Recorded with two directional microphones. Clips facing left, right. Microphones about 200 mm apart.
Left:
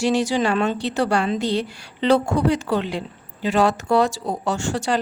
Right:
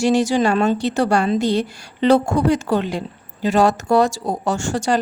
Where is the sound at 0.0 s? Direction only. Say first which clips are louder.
Right 3 dB; 45° right (ahead or behind).